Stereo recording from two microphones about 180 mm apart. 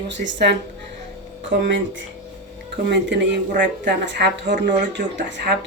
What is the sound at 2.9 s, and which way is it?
Speech, 75° right (ahead or behind).